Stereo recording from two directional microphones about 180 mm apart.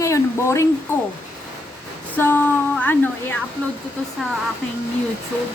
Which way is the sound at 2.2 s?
10° left (ahead or behind).